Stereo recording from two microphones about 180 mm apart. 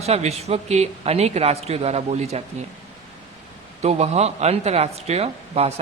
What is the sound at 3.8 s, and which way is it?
Speech, 35° right (ahead or behind).